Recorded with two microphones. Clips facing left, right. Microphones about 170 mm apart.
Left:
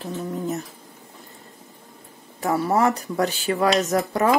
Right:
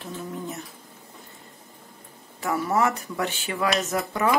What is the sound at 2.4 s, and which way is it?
A woman's voice, 35° left (ahead or behind).